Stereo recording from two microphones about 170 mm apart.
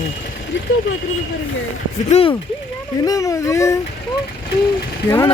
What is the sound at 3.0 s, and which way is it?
Speech, 20° left (ahead or behind).